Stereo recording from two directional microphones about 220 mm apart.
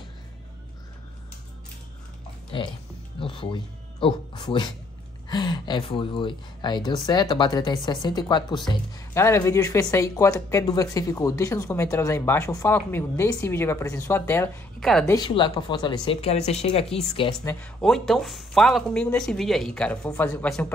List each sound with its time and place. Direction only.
3.2 s a woman's voice: 25° left (ahead or behind); by 15.1 s 5° left (ahead or behind)
15.1 s speech: 20° left (ahead or behind)
17.5 s speech: 5° left (ahead or behind)